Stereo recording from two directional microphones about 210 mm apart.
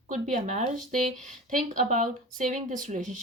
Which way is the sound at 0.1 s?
35° right (ahead or behind).